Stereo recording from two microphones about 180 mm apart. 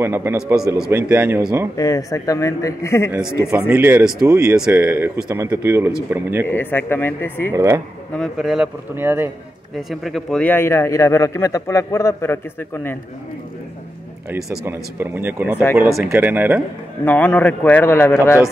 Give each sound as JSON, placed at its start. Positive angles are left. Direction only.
{"t": 0.0, "sound": "speech", "side_deg": -15}
{"t": 1.8, "sound": "a man's voice", "side_deg": 20}
{"t": 3.2, "sound": "speech", "side_deg": -5}
{"t": 6.4, "sound": "a man's voice", "side_deg": 10}
{"t": 7.5, "sound": "speech", "side_deg": -15}
{"t": 8.2, "sound": "speech", "side_deg": 0}
{"t": 8.9, "sound": "speech", "side_deg": -10}
{"t": 9.8, "sound": "a man's voice", "side_deg": 0}
{"t": 14.3, "sound": "speech", "side_deg": -10}
{"t": 17.0, "sound": "a man's voice", "side_deg": 10}